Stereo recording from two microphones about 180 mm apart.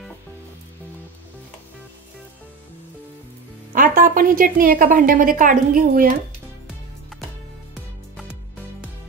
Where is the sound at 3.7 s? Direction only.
45° right (ahead or behind).